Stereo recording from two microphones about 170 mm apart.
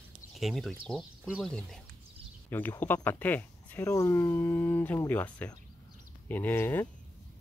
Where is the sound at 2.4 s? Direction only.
10° left (ahead or behind).